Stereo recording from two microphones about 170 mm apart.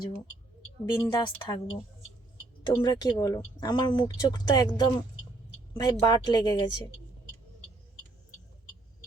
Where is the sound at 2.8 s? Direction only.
25° left (ahead or behind).